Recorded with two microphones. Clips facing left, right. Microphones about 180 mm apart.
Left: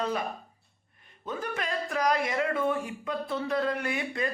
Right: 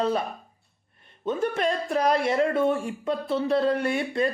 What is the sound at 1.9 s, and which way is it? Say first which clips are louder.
Speech: right 3 dB; 30° right (ahead or behind).